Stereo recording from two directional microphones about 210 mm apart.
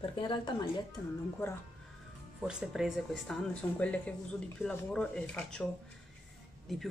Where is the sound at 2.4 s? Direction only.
5° right (ahead or behind).